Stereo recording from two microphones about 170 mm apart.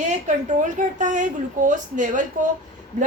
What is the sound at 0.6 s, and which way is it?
A woman's voice, 45° right (ahead or behind).